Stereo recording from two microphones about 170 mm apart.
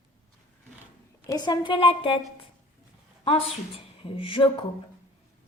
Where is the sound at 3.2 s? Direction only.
35° left (ahead or behind).